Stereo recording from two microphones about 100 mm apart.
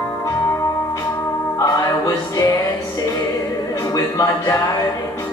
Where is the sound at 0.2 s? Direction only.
30° left (ahead or behind).